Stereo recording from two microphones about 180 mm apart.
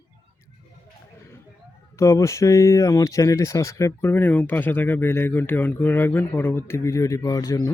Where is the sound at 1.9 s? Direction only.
15° left (ahead or behind).